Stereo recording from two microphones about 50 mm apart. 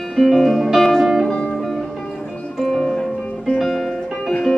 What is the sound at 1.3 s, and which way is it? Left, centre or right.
Music, centre.